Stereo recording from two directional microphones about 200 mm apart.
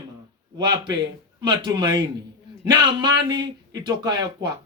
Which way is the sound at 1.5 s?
20° right (ahead or behind).